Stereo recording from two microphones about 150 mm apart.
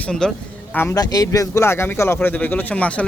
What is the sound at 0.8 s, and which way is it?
Speech, 20° left (ahead or behind).